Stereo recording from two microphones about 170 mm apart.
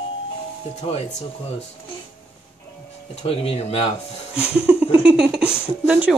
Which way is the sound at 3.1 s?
35° left (ahead or behind).